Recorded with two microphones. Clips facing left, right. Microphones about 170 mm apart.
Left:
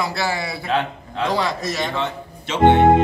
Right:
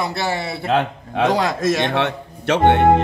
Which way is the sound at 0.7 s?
65° right (ahead or behind).